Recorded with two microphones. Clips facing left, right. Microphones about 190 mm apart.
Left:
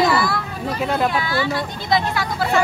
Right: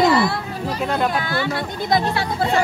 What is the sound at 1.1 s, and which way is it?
Speech, 50° right (ahead or behind).